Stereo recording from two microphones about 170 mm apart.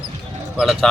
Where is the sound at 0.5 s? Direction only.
Centre (ahead or behind).